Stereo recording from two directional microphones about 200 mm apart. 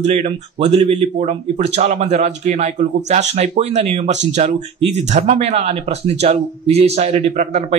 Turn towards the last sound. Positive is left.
turn(degrees=-35)  # may be behind; listen again after turning